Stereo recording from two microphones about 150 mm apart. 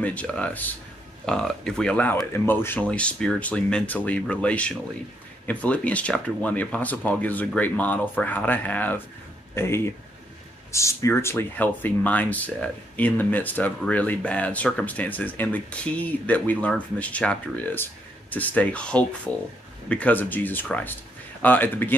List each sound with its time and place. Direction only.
0.0 s speech: 10° left (ahead or behind)